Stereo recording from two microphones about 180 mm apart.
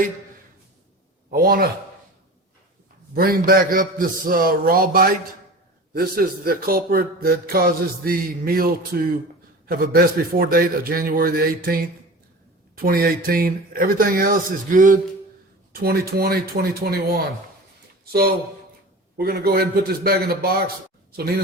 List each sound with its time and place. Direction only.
1.3 s speech: 55° right (ahead or behind)
3.2 s speech: 55° right (ahead or behind)
15.7 s speech: 55° right (ahead or behind)